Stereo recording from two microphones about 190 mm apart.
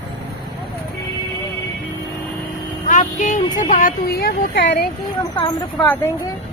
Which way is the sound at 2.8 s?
45° left (ahead or behind).